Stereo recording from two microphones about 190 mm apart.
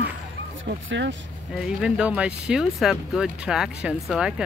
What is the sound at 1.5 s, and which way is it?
Speech, 5° right (ahead or behind).